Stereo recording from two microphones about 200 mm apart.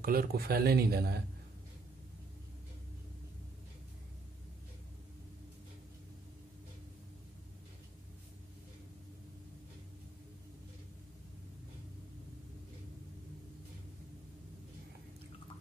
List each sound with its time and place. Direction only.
0.0 s speech: 45° right (ahead or behind)